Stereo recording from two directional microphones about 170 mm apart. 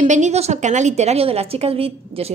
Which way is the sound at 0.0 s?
45° right (ahead or behind).